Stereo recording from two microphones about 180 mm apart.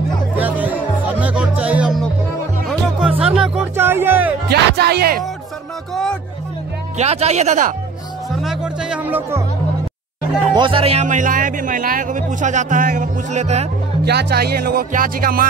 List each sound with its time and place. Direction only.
0.4 s music: 10° right (ahead or behind)
3.3 s speech: 5° right (ahead or behind)
4.5 s music: 60° right (ahead or behind)
7.0 s speech: 35° right (ahead or behind)
8.4 s music: 5° right (ahead or behind)
10.5 s speech: 30° right (ahead or behind)
14.0 s music: 60° right (ahead or behind)